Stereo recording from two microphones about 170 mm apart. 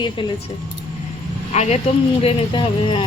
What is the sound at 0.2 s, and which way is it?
Speech, 30° left (ahead or behind).